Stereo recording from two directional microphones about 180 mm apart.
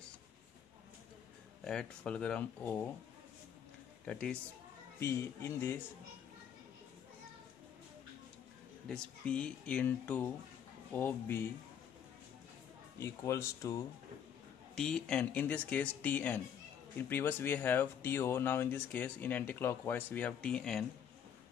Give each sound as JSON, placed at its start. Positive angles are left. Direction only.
{"t": 1.6, "sound": "speech", "side_deg": 5}
{"t": 4.0, "sound": "speech", "side_deg": 5}
{"t": 8.8, "sound": "speech", "side_deg": 5}
{"t": 13.0, "sound": "speech", "side_deg": 15}
{"t": 14.8, "sound": "speech", "side_deg": 5}